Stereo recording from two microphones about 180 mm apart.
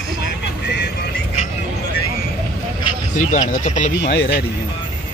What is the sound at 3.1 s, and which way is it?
Speech, 45° left (ahead or behind).